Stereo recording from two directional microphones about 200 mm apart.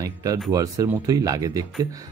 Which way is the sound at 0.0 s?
15° right (ahead or behind).